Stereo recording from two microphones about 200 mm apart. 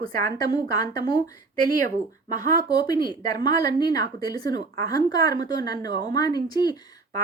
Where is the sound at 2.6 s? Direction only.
20° left (ahead or behind).